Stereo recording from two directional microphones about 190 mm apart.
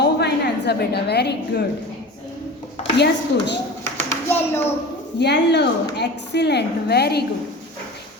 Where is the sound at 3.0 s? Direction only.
65° left (ahead or behind).